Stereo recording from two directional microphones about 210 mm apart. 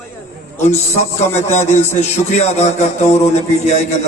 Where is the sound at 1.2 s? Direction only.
30° left (ahead or behind).